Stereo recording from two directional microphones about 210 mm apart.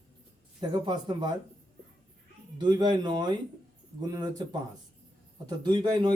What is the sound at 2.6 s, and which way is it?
Speech, 20° right (ahead or behind).